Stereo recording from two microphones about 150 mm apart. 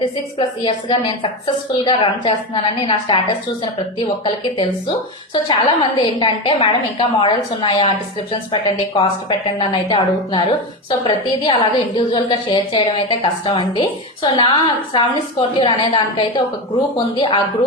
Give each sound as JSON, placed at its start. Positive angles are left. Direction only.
{"t": 0.3, "sound": "a woman's voice", "side_deg": 35}
{"t": 4.5, "sound": "a woman's voice", "side_deg": 30}